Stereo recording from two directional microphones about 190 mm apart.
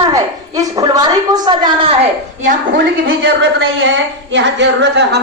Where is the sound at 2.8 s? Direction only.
75° right (ahead or behind).